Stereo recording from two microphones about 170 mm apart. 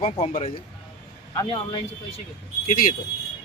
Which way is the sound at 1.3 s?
25° left (ahead or behind).